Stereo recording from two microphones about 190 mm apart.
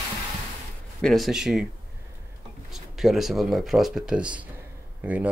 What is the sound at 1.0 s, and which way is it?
Speech, centre (ahead or behind).